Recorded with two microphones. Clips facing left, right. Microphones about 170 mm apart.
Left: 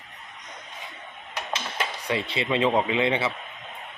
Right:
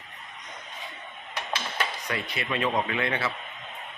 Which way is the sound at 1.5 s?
25° left (ahead or behind).